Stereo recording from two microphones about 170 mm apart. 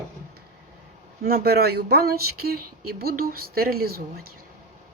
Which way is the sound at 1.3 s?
65° right (ahead or behind).